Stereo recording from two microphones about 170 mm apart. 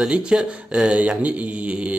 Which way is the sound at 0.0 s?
5° right (ahead or behind).